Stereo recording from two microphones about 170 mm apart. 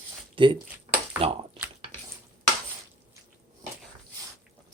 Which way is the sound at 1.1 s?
30° right (ahead or behind).